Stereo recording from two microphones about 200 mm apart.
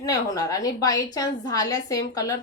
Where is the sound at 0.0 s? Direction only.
20° left (ahead or behind).